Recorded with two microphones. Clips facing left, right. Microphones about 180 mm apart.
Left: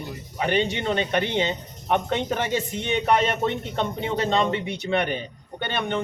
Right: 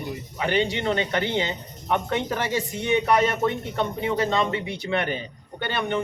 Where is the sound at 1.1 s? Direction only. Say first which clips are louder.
Left 1 dB; 20° left (ahead or behind).